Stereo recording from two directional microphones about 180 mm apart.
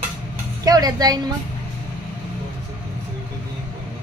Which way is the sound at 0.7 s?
20° right (ahead or behind).